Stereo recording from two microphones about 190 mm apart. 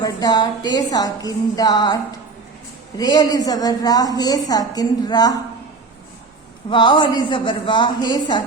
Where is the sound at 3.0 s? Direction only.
20° left (ahead or behind).